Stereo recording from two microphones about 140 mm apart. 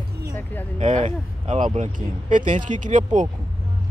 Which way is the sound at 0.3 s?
15° left (ahead or behind).